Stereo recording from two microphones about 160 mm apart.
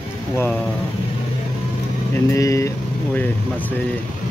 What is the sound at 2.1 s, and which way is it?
Speech, 20° left (ahead or behind).